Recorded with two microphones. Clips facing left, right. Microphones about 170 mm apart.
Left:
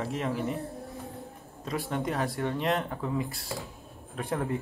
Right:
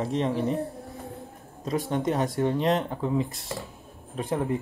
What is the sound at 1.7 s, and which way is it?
Speech, 35° right (ahead or behind).